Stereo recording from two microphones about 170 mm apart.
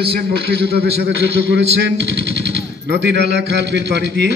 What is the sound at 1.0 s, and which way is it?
Speech, 90° right.